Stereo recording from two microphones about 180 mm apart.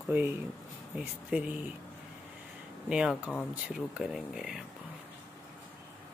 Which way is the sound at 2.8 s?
5° right (ahead or behind).